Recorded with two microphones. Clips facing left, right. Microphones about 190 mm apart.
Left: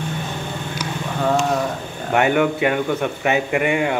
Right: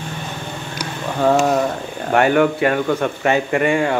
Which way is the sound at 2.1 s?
20° left (ahead or behind).